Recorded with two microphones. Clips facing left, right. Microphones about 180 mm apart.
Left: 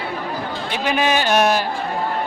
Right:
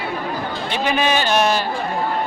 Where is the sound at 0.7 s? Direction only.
10° left (ahead or behind).